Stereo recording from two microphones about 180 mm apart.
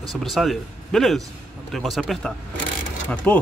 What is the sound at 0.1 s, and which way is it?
Speech, centre (ahead or behind).